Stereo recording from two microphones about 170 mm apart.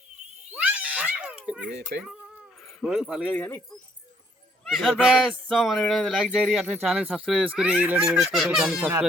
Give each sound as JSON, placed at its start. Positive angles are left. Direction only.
{"t": 0.5, "sound": "children playing", "side_deg": -10}
{"t": 1.6, "sound": "speech", "side_deg": -85}
{"t": 2.6, "sound": "speech", "side_deg": 0}
{"t": 3.3, "sound": "speech", "side_deg": 10}
{"t": 4.6, "sound": "speech", "side_deg": 0}